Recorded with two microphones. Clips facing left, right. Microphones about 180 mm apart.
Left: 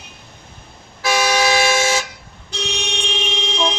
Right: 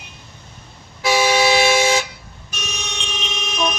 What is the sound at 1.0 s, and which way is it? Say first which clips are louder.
Toot: right 1 dB; 20° right (ahead or behind).